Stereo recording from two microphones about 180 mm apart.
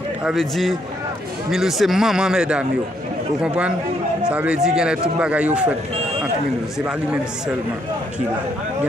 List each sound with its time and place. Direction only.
0.2 s a man's voice: centre (ahead or behind)
4.2 s a man's voice: 5° right (ahead or behind)
6.9 s a man's voice: 5° right (ahead or behind)